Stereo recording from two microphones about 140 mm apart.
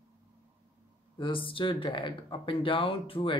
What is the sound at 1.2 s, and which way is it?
Speech, 35° left (ahead or behind).